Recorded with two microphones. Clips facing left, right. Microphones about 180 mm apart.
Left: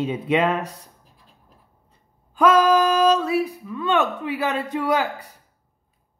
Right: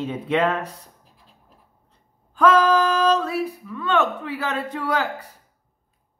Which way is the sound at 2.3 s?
10° left (ahead or behind).